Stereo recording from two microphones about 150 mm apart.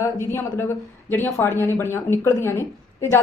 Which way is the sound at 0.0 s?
15° left (ahead or behind).